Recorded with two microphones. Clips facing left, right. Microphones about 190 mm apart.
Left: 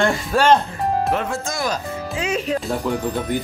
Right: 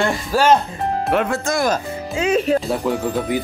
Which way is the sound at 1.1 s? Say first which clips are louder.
Right 4 dB; 65° right (ahead or behind).